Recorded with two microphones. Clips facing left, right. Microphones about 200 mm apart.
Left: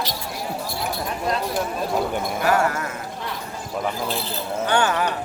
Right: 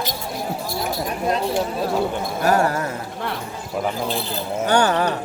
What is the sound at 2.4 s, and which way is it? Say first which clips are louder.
Speech: right 3 dB; 35° right (ahead or behind).